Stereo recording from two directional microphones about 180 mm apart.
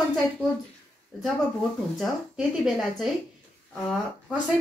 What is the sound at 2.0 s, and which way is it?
Speech, centre (ahead or behind).